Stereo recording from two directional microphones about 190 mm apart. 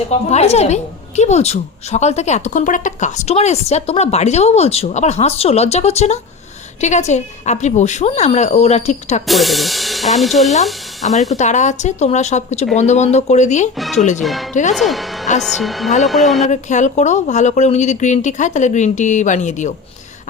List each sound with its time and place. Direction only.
0.3 s a woman's voice: 35° left (ahead or behind)
9.2 s speech: centre (ahead or behind)
11.3 s a woman's voice: 40° left (ahead or behind)
13.7 s a woman's voice: centre (ahead or behind)
14.5 s a woman's voice: 40° left (ahead or behind)
14.8 s a woman's voice: centre (ahead or behind)
16.5 s a woman's voice: 40° left (ahead or behind)